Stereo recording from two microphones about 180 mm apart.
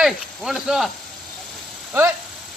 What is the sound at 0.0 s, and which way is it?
Speech, centre (ahead or behind).